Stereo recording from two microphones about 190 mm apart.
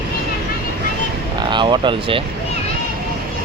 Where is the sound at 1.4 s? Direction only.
25° right (ahead or behind).